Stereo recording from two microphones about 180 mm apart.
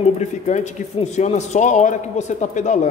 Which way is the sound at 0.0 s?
40° left (ahead or behind).